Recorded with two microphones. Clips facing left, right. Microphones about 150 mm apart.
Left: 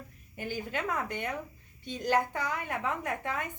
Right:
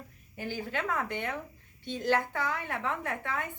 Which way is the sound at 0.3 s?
15° left (ahead or behind).